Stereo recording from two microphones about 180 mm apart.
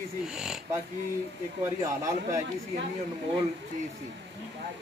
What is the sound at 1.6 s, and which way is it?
Speech, 15° right (ahead or behind).